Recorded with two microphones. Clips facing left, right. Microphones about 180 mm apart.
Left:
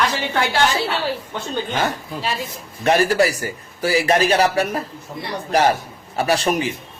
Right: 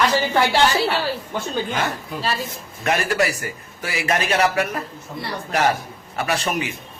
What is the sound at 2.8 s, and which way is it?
A man's voice, 35° left (ahead or behind).